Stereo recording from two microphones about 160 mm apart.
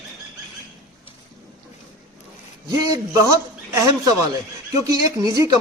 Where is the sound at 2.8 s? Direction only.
25° right (ahead or behind).